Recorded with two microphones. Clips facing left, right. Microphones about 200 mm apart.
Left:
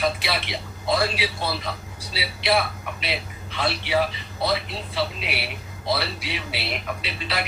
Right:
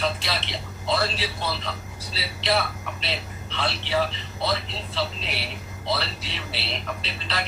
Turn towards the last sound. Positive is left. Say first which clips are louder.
# left 2 dB
turn(degrees=10)  # may be behind; listen again after turning